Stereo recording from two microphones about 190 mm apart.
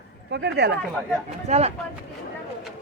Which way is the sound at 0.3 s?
65° right (ahead or behind).